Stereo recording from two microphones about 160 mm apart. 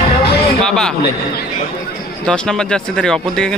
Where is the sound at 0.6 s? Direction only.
5° left (ahead or behind).